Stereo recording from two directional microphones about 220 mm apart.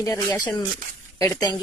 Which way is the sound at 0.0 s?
15° left (ahead or behind).